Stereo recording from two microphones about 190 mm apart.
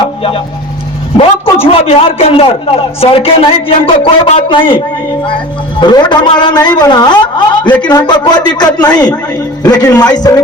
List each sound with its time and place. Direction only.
0.0 s a sound: 30° left (ahead or behind)
1.5 s a woman's voice: 30° left (ahead or behind)
5.8 s a woman's voice: 25° left (ahead or behind)